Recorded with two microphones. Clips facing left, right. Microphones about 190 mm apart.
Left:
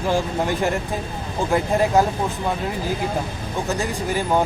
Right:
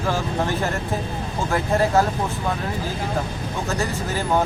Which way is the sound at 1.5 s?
15° left (ahead or behind).